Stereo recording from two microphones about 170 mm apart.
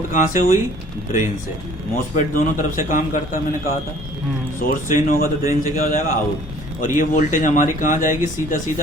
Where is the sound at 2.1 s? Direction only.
50° left (ahead or behind).